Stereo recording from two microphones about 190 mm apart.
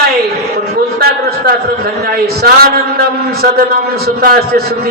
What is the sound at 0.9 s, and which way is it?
A man's voice, 55° right (ahead or behind).